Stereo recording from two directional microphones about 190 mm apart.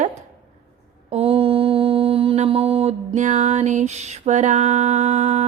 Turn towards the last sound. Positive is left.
turn(degrees=-40)  # may be behind; listen again after turning